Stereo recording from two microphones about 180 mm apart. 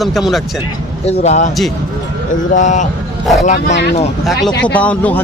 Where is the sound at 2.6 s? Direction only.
45° left (ahead or behind).